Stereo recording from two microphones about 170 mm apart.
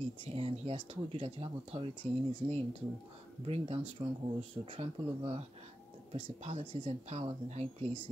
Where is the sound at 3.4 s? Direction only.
35° right (ahead or behind).